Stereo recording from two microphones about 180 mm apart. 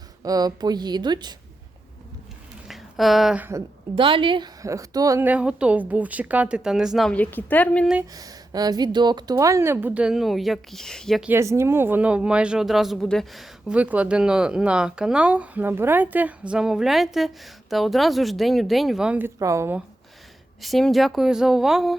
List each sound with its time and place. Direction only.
0.2 s a woman's voice: 20° right (ahead or behind)
2.6 s speech: centre (ahead or behind)
3.9 s a woman's voice: 30° right (ahead or behind); by 7.9 s 5° left (ahead or behind)
8.1 s a woman's voice: 20° right (ahead or behind); by 11.3 s centre (ahead or behind)
11.3 s speech: 15° right (ahead or behind)
20.6 s speech: centre (ahead or behind)